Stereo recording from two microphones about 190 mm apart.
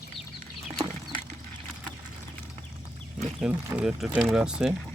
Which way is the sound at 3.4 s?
5° right (ahead or behind).